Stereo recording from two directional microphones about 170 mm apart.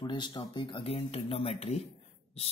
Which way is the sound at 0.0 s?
25° left (ahead or behind).